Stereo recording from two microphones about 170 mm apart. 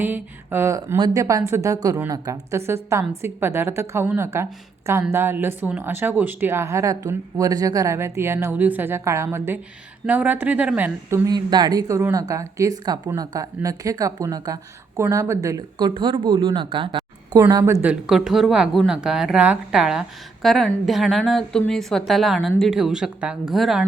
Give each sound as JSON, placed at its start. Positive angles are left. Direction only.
{"t": 0.0, "sound": "speech", "side_deg": -10}
{"t": 11.3, "sound": "speech", "side_deg": -25}
{"t": 17.8, "sound": "a woman's voice", "side_deg": -5}